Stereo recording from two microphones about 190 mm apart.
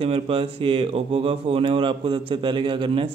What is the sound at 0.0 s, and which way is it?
Speech, 30° right (ahead or behind).